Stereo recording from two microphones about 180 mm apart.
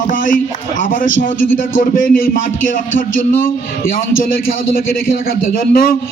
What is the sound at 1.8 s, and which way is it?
A man's voice, 50° left (ahead or behind).